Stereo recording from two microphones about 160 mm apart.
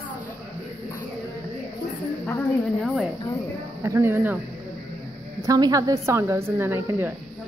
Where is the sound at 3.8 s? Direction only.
15° right (ahead or behind).